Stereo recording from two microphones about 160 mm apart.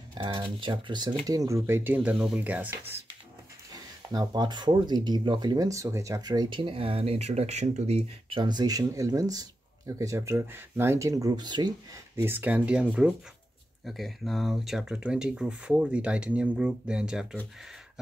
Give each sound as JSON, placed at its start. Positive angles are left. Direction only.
{"t": 0.1, "sound": "speech", "side_deg": -30}
{"t": 4.1, "sound": "speech", "side_deg": -25}
{"t": 12.2, "sound": "speech", "side_deg": -10}